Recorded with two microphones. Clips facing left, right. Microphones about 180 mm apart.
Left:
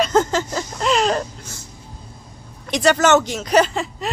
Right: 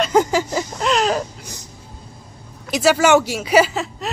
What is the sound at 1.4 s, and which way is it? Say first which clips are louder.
Music: right 1 dB; 15° right (ahead or behind).